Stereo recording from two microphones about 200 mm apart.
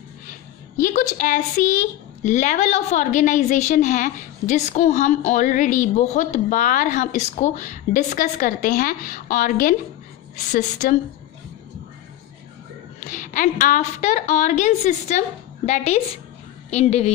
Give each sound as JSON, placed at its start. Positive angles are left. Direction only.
{"t": 0.7, "sound": "a woman's voice", "side_deg": 40}
{"t": 13.1, "sound": "a woman's voice", "side_deg": 40}